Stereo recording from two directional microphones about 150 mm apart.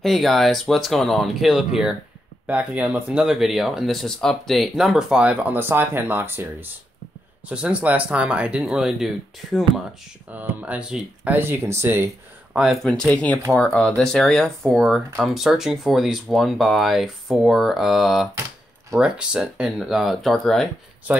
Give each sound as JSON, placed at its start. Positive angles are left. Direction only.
{"t": 0.0, "sound": "speech", "side_deg": 0}
{"t": 12.8, "sound": "speech", "side_deg": 5}